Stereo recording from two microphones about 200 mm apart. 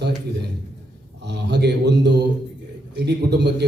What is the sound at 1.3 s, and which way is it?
Speech, 55° right (ahead or behind).